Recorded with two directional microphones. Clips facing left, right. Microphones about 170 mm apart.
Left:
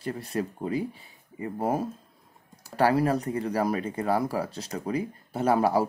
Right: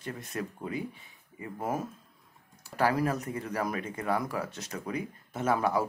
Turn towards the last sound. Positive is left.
turn(degrees=35)  # may be behind; listen again after turning